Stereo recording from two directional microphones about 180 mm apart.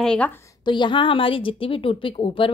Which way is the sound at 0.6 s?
25° left (ahead or behind).